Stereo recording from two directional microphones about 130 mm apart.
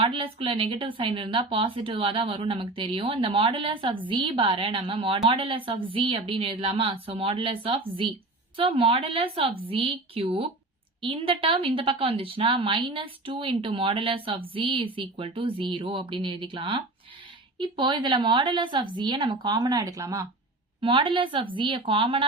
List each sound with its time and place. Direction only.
0.0 s a woman's voice: 45° right (ahead or behind); by 20.2 s 25° right (ahead or behind)
20.8 s a woman's voice: 40° right (ahead or behind)